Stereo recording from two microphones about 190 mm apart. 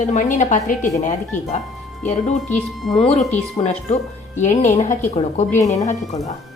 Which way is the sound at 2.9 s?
30° left (ahead or behind).